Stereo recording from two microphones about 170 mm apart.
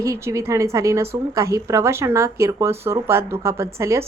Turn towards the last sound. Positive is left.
turn(degrees=-15)  # may be behind; listen again after turning